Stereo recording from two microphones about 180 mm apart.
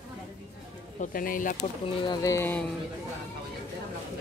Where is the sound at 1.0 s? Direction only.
50° left (ahead or behind).